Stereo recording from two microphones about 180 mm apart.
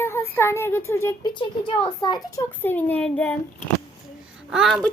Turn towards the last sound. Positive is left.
turn(degrees=0)  # may be behind; listen again after turning